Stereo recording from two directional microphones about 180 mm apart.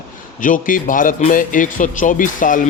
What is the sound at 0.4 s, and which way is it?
Speech, 45° left (ahead or behind).